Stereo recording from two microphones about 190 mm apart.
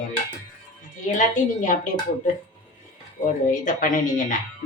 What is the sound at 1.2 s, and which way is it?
Speech, 40° left (ahead or behind).